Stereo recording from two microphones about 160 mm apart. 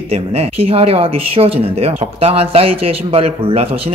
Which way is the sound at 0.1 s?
40° right (ahead or behind).